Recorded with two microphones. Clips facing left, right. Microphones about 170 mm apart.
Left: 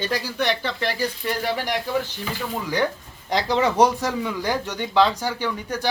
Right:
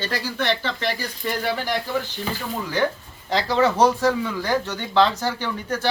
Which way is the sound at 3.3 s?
15° left (ahead or behind).